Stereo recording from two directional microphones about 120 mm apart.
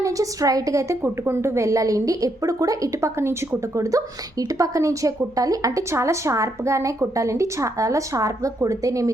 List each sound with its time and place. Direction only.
0.0 s a woman's voice: 30° right (ahead or behind)